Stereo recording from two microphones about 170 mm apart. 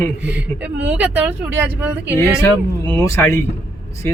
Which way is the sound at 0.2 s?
90° right.